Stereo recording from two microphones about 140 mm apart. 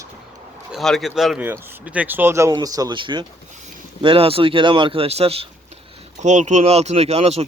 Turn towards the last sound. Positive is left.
turn(degrees=-45)  # may be behind; listen again after turning